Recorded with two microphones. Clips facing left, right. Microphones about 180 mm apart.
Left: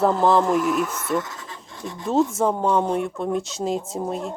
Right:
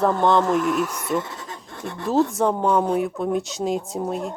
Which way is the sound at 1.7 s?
60° right (ahead or behind).